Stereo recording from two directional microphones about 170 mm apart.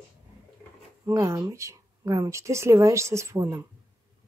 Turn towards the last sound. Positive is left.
turn(degrees=-15)  # may be behind; listen again after turning